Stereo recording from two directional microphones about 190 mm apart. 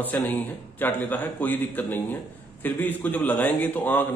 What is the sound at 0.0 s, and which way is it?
A man's voice, 10° left (ahead or behind).